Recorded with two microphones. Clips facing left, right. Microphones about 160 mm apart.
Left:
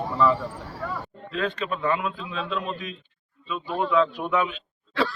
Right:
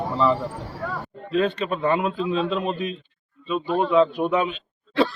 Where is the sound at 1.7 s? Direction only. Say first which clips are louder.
Right 4 dB; 25° right (ahead or behind).